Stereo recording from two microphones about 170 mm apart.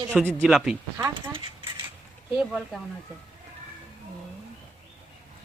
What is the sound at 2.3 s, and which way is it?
Speech, centre (ahead or behind).